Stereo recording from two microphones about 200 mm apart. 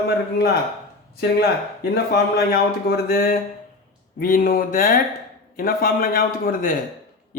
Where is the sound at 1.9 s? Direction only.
50° left (ahead or behind).